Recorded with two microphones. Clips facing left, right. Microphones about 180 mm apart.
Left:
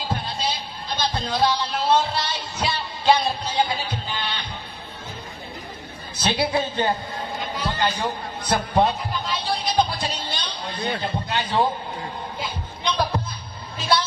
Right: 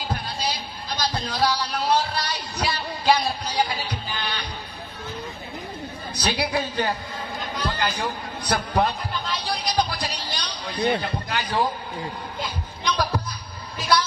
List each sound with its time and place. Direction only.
0.1 s speech: 25° left (ahead or behind)
6.1 s a man's voice: 25° left (ahead or behind)
9.4 s a sound: 25° left (ahead or behind)
11.0 s a man's voice: 25° left (ahead or behind)
12.8 s a man's voice: 25° left (ahead or behind)
13.7 s vehicle: 25° left (ahead or behind)